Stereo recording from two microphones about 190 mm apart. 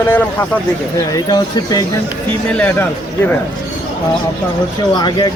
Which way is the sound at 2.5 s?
10° left (ahead or behind).